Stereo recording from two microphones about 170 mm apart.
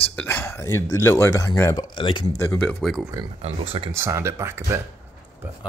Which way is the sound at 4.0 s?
15° right (ahead or behind).